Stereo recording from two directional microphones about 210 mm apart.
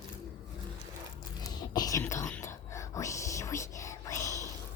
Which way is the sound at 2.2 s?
10° left (ahead or behind).